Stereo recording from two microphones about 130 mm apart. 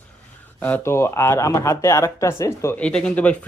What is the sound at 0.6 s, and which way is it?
Speech, 15° left (ahead or behind).